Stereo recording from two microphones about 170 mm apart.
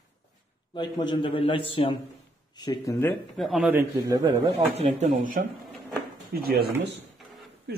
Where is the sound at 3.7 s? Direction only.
15° right (ahead or behind).